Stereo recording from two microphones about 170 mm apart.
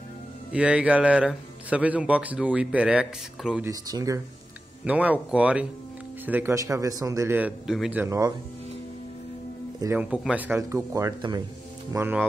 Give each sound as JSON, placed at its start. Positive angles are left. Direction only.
{"t": 0.5, "sound": "a man's voice", "side_deg": -5}
{"t": 3.6, "sound": "speech", "side_deg": -20}
{"t": 4.8, "sound": "a man's voice", "side_deg": -10}
{"t": 9.8, "sound": "speech", "side_deg": -15}
{"t": 10.0, "sound": "a man's voice", "side_deg": -5}